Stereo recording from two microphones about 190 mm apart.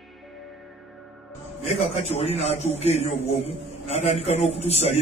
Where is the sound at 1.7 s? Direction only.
35° left (ahead or behind).